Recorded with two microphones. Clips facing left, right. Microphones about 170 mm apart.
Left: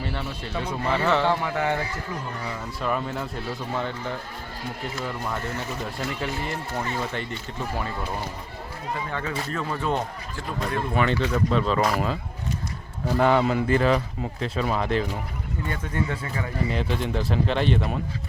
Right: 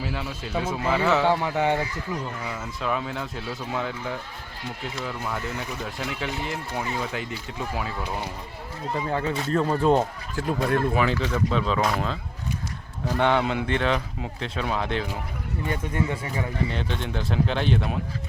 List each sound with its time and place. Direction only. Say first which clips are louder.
0.0 s speech: even; 5° right (ahead or behind)
1.3 s speech: right 2 dB; 20° right (ahead or behind)
2.8 s speech: left 1 dB; centre (ahead or behind)
9.0 s speech: right 4 dB; 35° right (ahead or behind)
10.9 s speech: left 1 dB; centre (ahead or behind)
15.7 s speech: right 2 dB; 20° right (ahead or behind)
16.6 s speech: left 3 dB; centre (ahead or behind)